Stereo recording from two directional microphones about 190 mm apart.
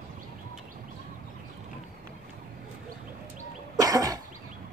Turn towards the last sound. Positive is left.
turn(degrees=-20)  # may be behind; listen again after turning